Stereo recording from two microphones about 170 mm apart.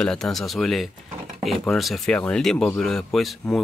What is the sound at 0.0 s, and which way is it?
Speech, 5° left (ahead or behind).